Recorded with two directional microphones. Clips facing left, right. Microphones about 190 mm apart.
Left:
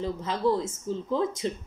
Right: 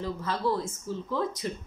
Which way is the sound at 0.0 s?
20° left (ahead or behind).